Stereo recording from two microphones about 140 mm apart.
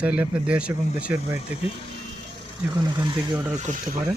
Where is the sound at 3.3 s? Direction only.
15° right (ahead or behind).